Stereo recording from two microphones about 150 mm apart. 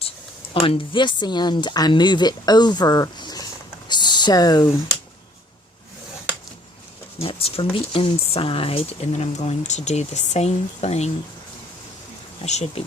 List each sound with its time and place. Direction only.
0.6 s a woman's voice: 35° left (ahead or behind)
7.2 s speech: 40° left (ahead or behind)
12.4 s speech: 45° left (ahead or behind)